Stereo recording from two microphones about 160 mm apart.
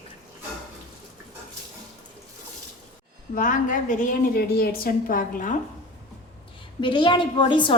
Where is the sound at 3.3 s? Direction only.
55° left (ahead or behind).